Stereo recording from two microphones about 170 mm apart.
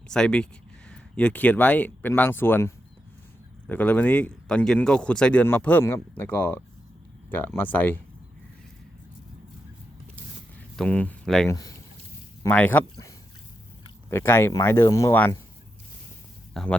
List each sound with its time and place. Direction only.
0.1 s speech: 5° left (ahead or behind)
10.8 s speech: 5° left (ahead or behind)
11.4 s speech: 20° left (ahead or behind)
12.5 s speech: 10° left (ahead or behind)
14.1 s speech: 15° left (ahead or behind)
16.6 s speech: centre (ahead or behind)